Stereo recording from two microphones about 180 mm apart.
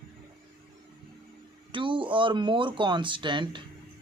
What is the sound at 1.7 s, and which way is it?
Speech, 25° right (ahead or behind).